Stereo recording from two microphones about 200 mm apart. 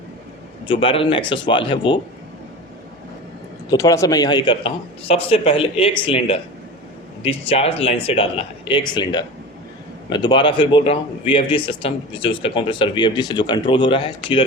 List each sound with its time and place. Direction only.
0.7 s a man's voice: 25° left (ahead or behind)
3.7 s a man's voice: 15° left (ahead or behind)